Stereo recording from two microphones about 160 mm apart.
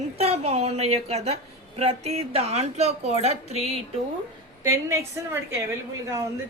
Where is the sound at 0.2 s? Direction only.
40° right (ahead or behind).